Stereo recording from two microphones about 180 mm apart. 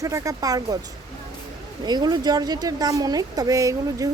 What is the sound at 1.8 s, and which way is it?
Speech, 25° right (ahead or behind).